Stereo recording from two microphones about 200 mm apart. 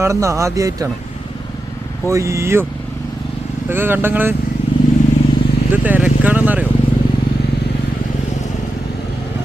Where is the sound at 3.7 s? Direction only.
10° right (ahead or behind).